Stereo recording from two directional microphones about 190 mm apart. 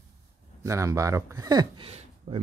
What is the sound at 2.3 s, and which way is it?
Speech, 30° right (ahead or behind).